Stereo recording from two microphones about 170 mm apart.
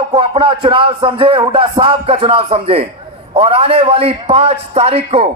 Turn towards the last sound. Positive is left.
turn(degrees=-35)  # may be behind; listen again after turning